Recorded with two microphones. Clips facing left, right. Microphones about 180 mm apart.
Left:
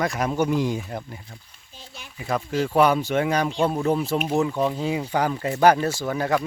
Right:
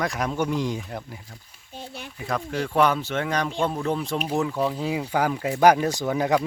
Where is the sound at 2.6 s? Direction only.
5° left (ahead or behind); by 6.4 s 15° right (ahead or behind).